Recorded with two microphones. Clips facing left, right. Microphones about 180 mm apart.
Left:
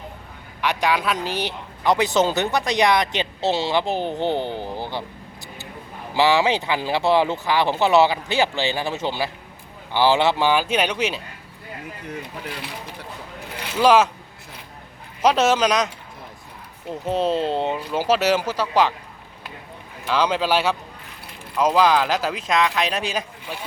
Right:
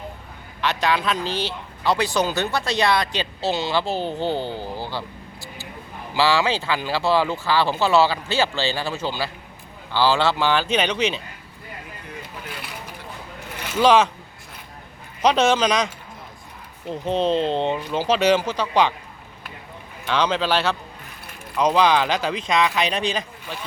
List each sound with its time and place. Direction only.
0.6 s speech: 10° left (ahead or behind)
13.8 s speech: 5° left (ahead or behind)
15.2 s speech: 5° left (ahead or behind)
16.9 s speech: 5° left (ahead or behind)
20.1 s speech: 5° left (ahead or behind)